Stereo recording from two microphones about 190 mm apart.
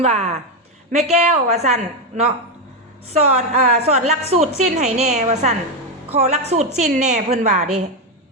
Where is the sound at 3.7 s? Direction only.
35° right (ahead or behind).